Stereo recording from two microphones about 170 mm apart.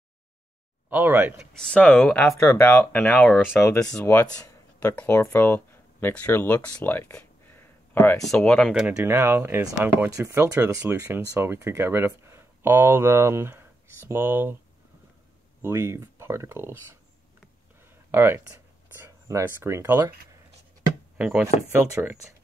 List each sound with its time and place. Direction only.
0.8 s speech: 10° right (ahead or behind)
1.6 s speech: 5° left (ahead or behind)
8.8 s speech: 10° right (ahead or behind)
15.6 s speech: 15° right (ahead or behind)
18.1 s speech: 15° right (ahead or behind)
21.2 s speech: 5° right (ahead or behind)